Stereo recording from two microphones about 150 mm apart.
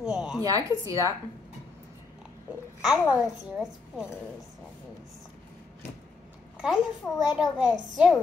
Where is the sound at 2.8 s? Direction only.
5° right (ahead or behind).